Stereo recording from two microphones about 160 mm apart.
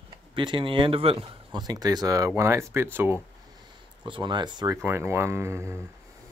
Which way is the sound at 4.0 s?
30° right (ahead or behind).